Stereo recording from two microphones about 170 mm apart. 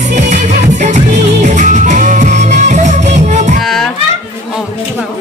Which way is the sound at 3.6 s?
Centre (ahead or behind).